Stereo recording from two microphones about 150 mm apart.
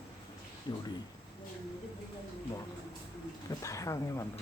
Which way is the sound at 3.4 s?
20° left (ahead or behind).